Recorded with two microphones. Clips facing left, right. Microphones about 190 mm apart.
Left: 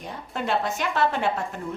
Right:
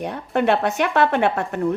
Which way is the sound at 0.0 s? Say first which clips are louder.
Right 10 dB; 65° right (ahead or behind).